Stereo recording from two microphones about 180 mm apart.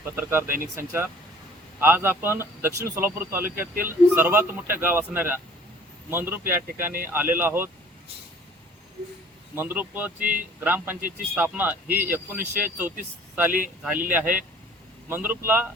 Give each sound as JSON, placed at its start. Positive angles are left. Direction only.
{"t": 0.0, "sound": "speech", "side_deg": -15}
{"t": 9.6, "sound": "speech", "side_deg": -10}
{"t": 10.2, "sound": "speech", "side_deg": -50}
{"t": 10.6, "sound": "speech", "side_deg": -10}